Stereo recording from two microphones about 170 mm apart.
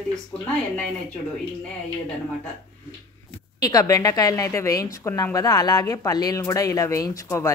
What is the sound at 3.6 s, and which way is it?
Speech, 20° left (ahead or behind).